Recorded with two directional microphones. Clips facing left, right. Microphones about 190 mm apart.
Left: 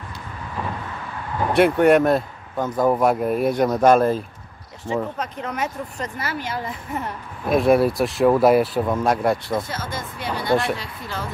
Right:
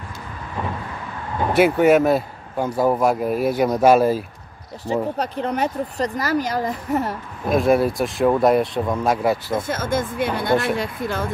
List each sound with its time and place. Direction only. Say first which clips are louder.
1.5 s speech: even; 5° right (ahead or behind)
5.1 s speech: right 5 dB; 35° right (ahead or behind)
7.4 s speech: left 1 dB; centre (ahead or behind)
9.7 s speech: right 8 dB; 50° right (ahead or behind)